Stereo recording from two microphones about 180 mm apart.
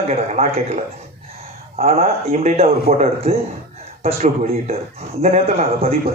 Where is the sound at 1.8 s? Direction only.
35° right (ahead or behind).